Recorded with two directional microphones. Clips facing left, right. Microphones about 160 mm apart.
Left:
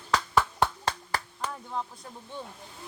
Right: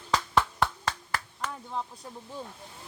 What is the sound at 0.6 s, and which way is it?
Clapping, 30° left (ahead or behind).